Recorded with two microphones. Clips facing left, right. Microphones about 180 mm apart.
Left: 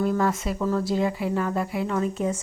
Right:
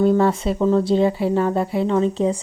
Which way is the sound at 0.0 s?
30° right (ahead or behind).